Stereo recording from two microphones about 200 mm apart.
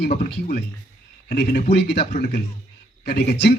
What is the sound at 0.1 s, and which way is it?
A woman's voice, 40° left (ahead or behind).